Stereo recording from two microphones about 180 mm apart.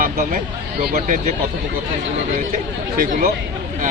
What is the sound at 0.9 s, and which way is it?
Speech, 45° right (ahead or behind).